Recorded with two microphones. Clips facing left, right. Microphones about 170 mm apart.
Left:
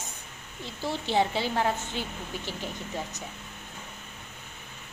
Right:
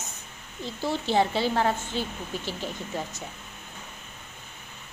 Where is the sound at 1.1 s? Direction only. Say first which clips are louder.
Right 2 dB; 15° left (ahead or behind).